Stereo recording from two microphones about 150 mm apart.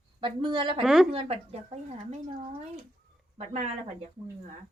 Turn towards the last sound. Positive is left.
turn(degrees=-45)  # may be behind; listen again after turning